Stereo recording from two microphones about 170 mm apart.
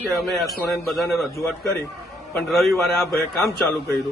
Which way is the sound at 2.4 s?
Centre (ahead or behind).